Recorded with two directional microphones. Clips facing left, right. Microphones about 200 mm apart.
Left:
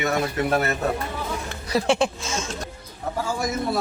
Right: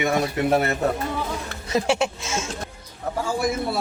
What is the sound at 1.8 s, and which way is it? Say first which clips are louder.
Speech: left 2 dB; 10° right (ahead or behind).